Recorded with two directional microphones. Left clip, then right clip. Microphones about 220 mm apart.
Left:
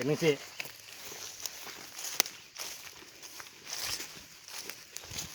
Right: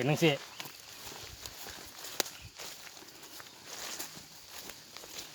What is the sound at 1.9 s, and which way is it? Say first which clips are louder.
Walk: left 4 dB; 45° left (ahead or behind).